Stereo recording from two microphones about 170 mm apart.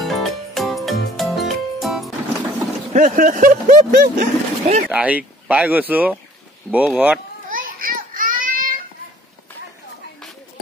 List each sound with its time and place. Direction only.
0.0 s music: centre (ahead or behind)
2.9 s speech: 50° right (ahead or behind)
4.9 s speech: 10° right (ahead or behind)
7.4 s a sound: 55° right (ahead or behind)